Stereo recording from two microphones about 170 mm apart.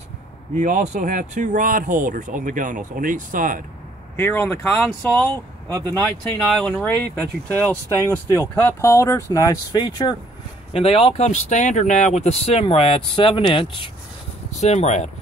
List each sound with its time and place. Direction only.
0.6 s speech: 45° right (ahead or behind)
4.2 s speech: 10° left (ahead or behind)
7.6 s speech: 10° left (ahead or behind)
10.7 s speech: 35° left (ahead or behind)
14.5 s speech: 40° left (ahead or behind)